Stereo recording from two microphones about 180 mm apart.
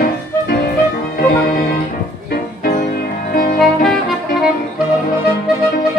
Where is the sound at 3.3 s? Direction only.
55° left (ahead or behind).